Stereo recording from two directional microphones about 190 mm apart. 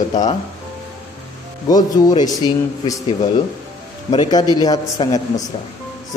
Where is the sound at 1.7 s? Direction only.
20° left (ahead or behind).